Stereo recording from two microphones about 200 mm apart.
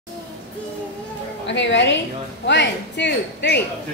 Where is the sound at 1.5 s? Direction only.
65° left (ahead or behind).